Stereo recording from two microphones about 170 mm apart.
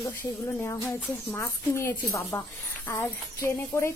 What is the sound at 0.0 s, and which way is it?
Speech, 15° left (ahead or behind).